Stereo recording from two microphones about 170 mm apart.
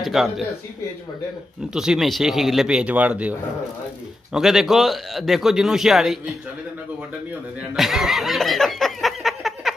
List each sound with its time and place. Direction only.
0.0 s a man's voice: centre (ahead or behind)
1.7 s a man's voice: 5° right (ahead or behind)
7.7 s a sound: centre (ahead or behind)